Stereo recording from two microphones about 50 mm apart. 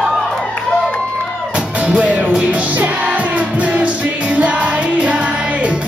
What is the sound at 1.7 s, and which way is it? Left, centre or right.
Music, right.